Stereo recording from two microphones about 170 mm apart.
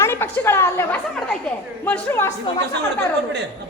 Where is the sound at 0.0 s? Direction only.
15° left (ahead or behind).